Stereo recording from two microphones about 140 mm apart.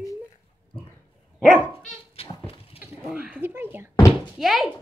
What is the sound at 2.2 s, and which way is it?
Goat, 45° left (ahead or behind).